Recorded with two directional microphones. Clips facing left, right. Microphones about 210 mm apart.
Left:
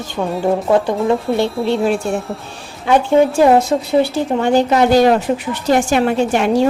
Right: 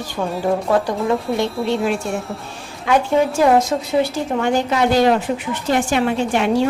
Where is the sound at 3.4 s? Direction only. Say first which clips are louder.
Left 3 dB; 30° left (ahead or behind).